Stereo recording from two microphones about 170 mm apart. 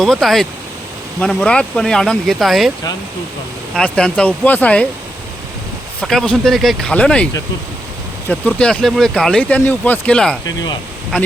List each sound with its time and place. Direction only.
0.0 s speech: centre (ahead or behind)
3.8 s speech: 5° left (ahead or behind)
6.0 s speech: 5° left (ahead or behind)
8.3 s speech: 5° left (ahead or behind)